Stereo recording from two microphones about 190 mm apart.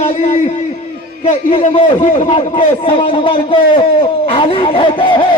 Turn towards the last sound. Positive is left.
turn(degrees=25)  # may be behind; listen again after turning